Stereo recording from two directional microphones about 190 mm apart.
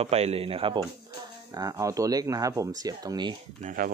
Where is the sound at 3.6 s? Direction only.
45° right (ahead or behind).